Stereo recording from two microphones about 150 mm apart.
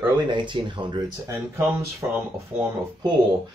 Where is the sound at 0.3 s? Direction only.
30° right (ahead or behind).